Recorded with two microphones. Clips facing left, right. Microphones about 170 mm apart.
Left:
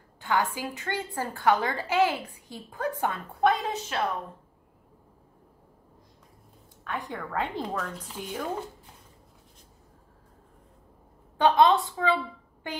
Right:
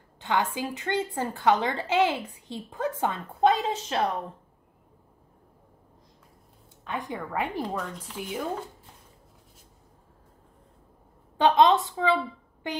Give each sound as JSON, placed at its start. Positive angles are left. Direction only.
{"t": 0.2, "sound": "a woman's voice", "side_deg": -20}
{"t": 6.8, "sound": "speech", "side_deg": -20}
{"t": 7.6, "sound": "speech", "side_deg": 0}
{"t": 11.4, "sound": "a woman's voice", "side_deg": -20}